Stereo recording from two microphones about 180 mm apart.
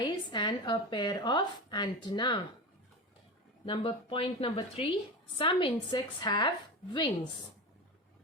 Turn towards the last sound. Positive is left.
turn(degrees=25)  # may be behind; listen again after turning